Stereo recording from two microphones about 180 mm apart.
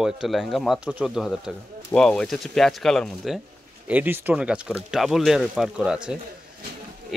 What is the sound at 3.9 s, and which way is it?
Speech, 10° right (ahead or behind).